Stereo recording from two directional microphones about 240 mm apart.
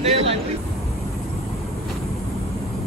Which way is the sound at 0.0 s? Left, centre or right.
Right.